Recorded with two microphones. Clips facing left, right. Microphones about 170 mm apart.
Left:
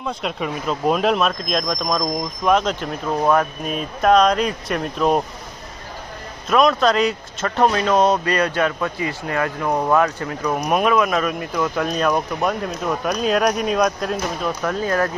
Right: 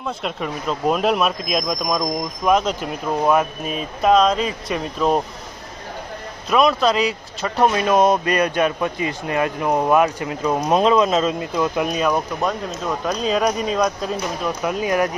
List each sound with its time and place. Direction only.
0.0 s speech: centre (ahead or behind)
6.5 s speech: centre (ahead or behind); by 11.9 s 15° right (ahead or behind)
11.9 s speech: 5° right (ahead or behind)
12.4 s speech: 5° left (ahead or behind)
14.7 s speech: 15° right (ahead or behind)